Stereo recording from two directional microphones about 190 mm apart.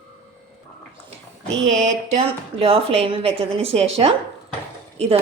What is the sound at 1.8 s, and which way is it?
A woman's voice, 35° right (ahead or behind).